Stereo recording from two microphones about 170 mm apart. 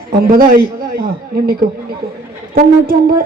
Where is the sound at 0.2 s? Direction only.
60° right (ahead or behind).